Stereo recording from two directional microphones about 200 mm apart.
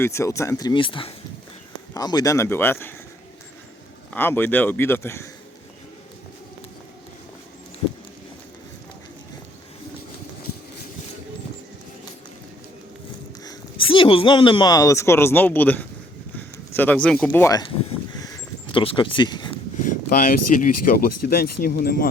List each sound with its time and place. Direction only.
0.0 s a man's voice: 15° left (ahead or behind)
4.1 s a man's voice: 10° left (ahead or behind)
13.4 s a man's voice: 20° left (ahead or behind)
18.2 s a sound: 20° left (ahead or behind)
19.8 s speech: 40° left (ahead or behind)